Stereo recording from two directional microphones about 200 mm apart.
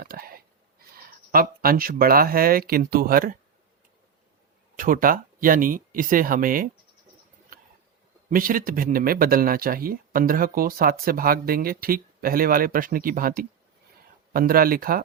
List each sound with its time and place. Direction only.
0.0 s a sound: 45° right (ahead or behind)
0.9 s speech: 45° right (ahead or behind)
4.8 s speech: 45° right (ahead or behind)
8.3 s speech: 45° right (ahead or behind)